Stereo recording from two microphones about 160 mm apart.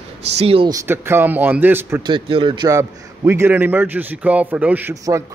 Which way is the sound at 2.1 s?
30° right (ahead or behind).